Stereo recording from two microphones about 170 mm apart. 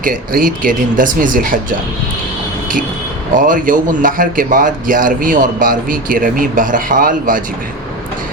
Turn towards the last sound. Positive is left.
turn(degrees=-55)  # may be behind; listen again after turning